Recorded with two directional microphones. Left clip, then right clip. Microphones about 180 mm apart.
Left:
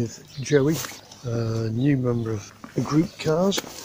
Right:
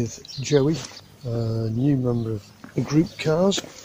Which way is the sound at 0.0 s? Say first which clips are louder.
Right 1 dB; 10° right (ahead or behind).